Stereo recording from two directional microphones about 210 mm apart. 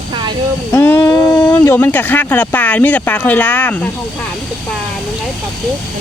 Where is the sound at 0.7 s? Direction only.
10° left (ahead or behind).